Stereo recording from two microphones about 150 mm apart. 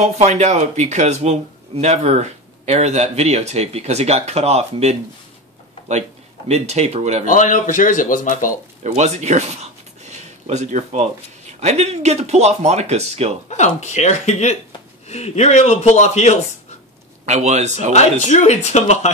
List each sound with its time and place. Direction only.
0.0 s speech: 50° right (ahead or behind)
7.2 s speech: 60° left (ahead or behind)
8.8 s speech: 50° right (ahead or behind)
13.5 s a man's voice: 50° left (ahead or behind)
17.3 s speech: 50° right (ahead or behind)
17.9 s a man's voice: 45° left (ahead or behind)